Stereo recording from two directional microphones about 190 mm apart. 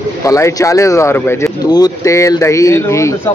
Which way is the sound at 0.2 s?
15° left (ahead or behind).